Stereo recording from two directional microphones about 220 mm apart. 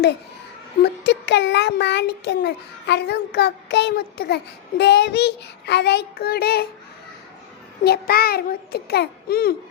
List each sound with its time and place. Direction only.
1.0 s a child's voice: 50° left (ahead or behind)
7.9 s a child's voice: 45° left (ahead or behind)